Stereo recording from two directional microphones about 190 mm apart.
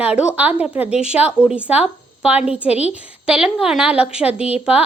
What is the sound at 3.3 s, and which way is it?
A woman's voice, 5° right (ahead or behind).